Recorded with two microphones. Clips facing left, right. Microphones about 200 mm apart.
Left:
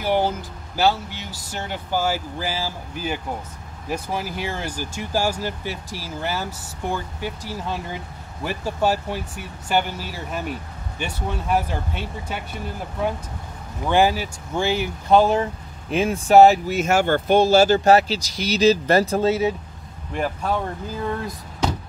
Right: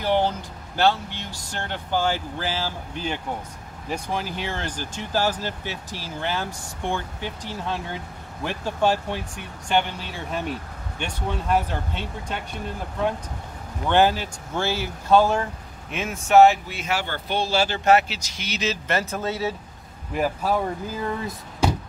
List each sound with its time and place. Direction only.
0.0 s speech: 10° left (ahead or behind)
15.9 s speech: 35° left (ahead or behind)
20.1 s speech: 5° right (ahead or behind)